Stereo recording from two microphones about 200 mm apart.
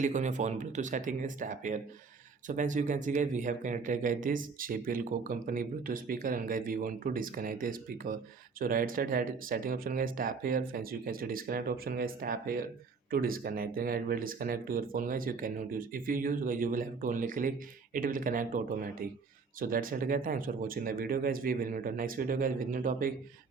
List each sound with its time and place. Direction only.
0.0 s speech: 40° right (ahead or behind)